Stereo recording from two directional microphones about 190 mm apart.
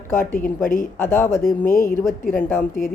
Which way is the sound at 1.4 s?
45° left (ahead or behind).